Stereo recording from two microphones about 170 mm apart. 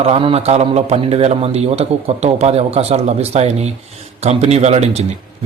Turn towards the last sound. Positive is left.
turn(degrees=-40)  # may be behind; listen again after turning